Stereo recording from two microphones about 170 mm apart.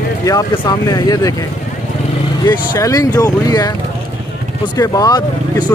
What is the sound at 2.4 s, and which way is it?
Speech, 20° left (ahead or behind).